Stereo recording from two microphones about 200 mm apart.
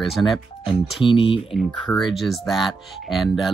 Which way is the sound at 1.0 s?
25° left (ahead or behind).